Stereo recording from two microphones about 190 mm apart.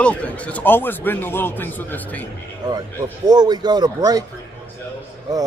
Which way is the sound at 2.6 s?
20° right (ahead or behind).